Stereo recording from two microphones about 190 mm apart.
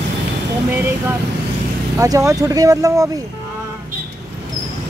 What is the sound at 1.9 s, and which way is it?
Speech, 15° right (ahead or behind).